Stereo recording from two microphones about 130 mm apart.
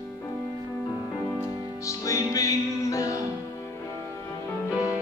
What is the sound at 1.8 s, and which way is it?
Music, 25° left (ahead or behind).